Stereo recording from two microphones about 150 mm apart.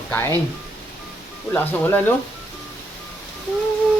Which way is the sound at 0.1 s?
15° left (ahead or behind).